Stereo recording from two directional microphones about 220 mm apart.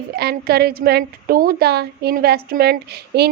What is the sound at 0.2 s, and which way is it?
A woman's voice, 45° right (ahead or behind).